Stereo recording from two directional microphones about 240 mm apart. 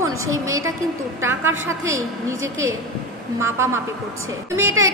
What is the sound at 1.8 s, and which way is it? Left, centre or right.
A woman's voice, centre.